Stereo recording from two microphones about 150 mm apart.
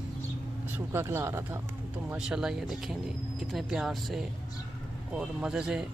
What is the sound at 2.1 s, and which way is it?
Speech, 5° right (ahead or behind).